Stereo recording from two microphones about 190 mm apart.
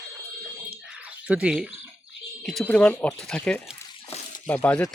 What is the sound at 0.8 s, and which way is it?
Bird, 5° right (ahead or behind).